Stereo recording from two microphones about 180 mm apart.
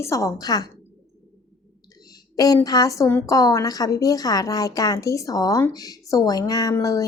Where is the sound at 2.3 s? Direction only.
20° left (ahead or behind).